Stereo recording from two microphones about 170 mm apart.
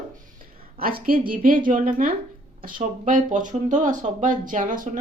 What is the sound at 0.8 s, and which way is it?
A woman's voice, 55° right (ahead or behind).